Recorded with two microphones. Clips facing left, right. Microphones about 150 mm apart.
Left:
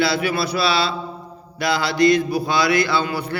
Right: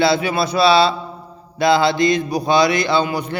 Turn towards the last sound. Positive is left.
turn(degrees=-20)  # may be behind; listen again after turning